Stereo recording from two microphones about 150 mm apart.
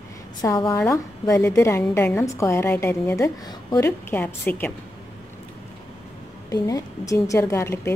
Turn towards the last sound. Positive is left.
turn(degrees=20)  # may be behind; listen again after turning